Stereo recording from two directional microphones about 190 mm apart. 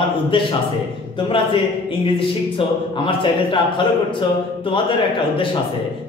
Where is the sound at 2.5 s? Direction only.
25° left (ahead or behind).